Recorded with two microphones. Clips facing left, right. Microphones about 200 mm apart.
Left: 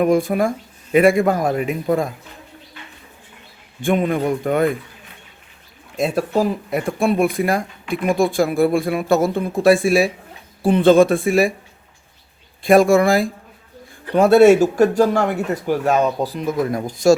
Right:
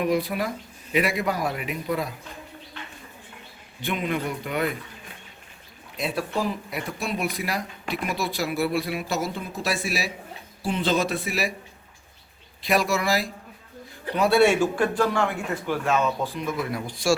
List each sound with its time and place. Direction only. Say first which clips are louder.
0.0 s speech: left 8 dB; 50° left (ahead or behind)
3.8 s speech: left 9 dB; 50° left (ahead or behind)
6.0 s speech: left 8 dB; 45° left (ahead or behind)
12.6 s speech: left 11 dB; 50° left (ahead or behind)